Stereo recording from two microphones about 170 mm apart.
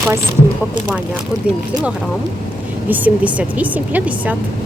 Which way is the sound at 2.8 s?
10° right (ahead or behind).